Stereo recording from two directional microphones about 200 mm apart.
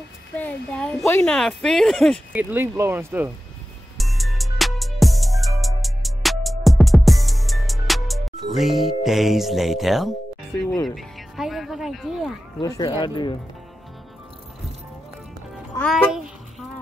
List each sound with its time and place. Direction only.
0.4 s speech: 5° left (ahead or behind)
2.3 s speech: 10° right (ahead or behind)
4.0 s music: centre (ahead or behind)
10.5 s speech: 15° left (ahead or behind)
11.0 s speech: centre (ahead or behind)
12.5 s speech: 20° left (ahead or behind)
15.7 s music: 15° left (ahead or behind)